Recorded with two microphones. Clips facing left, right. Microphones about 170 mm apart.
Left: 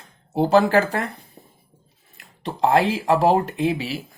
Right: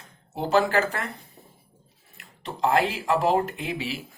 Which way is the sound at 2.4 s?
35° left (ahead or behind).